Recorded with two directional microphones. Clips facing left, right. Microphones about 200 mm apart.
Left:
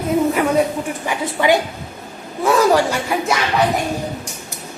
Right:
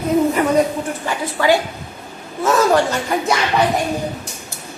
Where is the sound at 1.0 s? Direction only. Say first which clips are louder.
Even; 20° left (ahead or behind).